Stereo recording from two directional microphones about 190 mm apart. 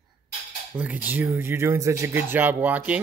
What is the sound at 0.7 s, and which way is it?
Speech, 10° right (ahead or behind).